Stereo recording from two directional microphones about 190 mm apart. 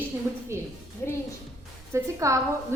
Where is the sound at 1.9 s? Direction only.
15° right (ahead or behind).